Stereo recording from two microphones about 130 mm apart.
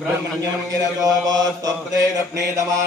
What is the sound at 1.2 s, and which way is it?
Mantra, 30° right (ahead or behind).